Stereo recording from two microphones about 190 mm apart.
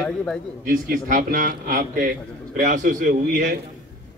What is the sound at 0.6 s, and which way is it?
Speech, 45° right (ahead or behind).